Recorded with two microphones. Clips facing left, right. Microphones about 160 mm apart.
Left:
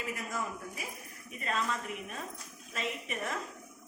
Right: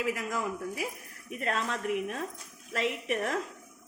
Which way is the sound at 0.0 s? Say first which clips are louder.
Right 6 dB; 90° right.